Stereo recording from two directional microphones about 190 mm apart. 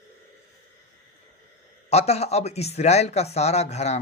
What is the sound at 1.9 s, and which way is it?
Speech, 35° left (ahead or behind).